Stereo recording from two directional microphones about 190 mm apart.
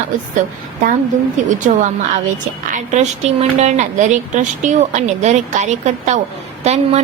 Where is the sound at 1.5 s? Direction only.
40° right (ahead or behind).